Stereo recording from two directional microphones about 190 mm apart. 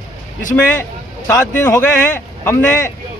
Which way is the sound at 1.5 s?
10° left (ahead or behind).